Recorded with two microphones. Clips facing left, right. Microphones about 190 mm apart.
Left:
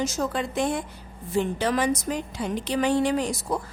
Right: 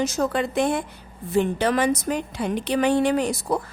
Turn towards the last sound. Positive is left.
turn(degrees=-60)  # may be behind; listen again after turning